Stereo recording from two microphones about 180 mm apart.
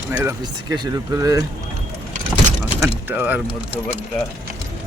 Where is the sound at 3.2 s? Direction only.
10° right (ahead or behind).